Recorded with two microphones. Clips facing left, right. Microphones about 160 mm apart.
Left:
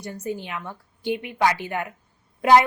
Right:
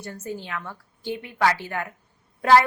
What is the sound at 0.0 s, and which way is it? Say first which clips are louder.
A woman's voice: left 3 dB; 15° left (ahead or behind).